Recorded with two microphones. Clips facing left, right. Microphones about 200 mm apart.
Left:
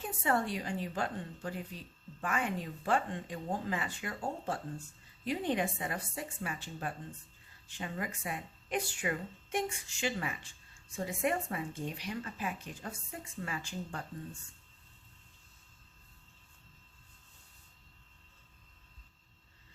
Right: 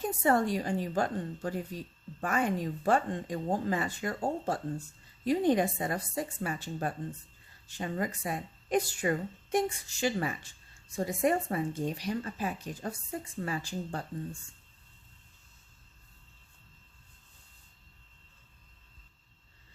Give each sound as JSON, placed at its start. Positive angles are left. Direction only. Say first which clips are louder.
{"t": 0.0, "sound": "speech", "louder": "right 6 dB", "side_deg": -40}